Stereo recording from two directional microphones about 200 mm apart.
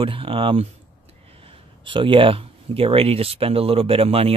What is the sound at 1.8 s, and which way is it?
Speech, 25° right (ahead or behind).